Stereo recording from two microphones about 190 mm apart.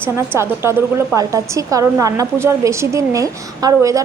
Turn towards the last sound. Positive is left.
turn(degrees=-20)  # may be behind; listen again after turning